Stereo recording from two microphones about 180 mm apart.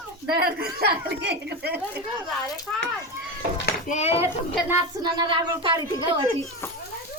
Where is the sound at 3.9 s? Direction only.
35° left (ahead or behind).